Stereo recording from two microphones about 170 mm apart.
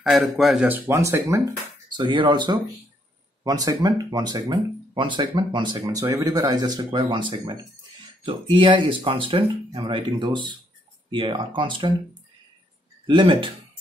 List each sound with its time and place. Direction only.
0.0 s a man's voice: centre (ahead or behind); by 1.4 s 15° right (ahead or behind)
1.9 s speech: 25° right (ahead or behind)
13.0 s speech: 30° right (ahead or behind)